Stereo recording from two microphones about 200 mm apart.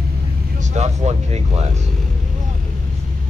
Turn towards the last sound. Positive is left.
turn(degrees=-35)  # may be behind; listen again after turning